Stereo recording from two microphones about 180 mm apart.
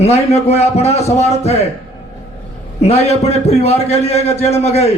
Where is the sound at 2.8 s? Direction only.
35° left (ahead or behind).